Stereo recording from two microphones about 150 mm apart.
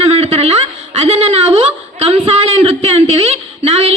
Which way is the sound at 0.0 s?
45° right (ahead or behind).